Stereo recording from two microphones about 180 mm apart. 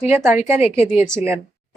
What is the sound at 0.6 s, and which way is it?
Speech, 35° left (ahead or behind).